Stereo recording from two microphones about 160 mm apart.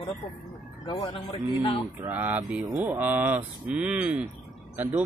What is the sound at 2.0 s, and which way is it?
Speech, 10° right (ahead or behind).